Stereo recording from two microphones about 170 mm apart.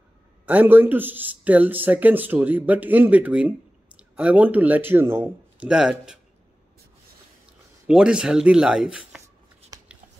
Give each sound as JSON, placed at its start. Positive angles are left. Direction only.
{"t": 0.5, "sound": "speech", "side_deg": -10}
{"t": 7.8, "sound": "speech", "side_deg": -5}
{"t": 9.7, "sound": "a sound", "side_deg": -20}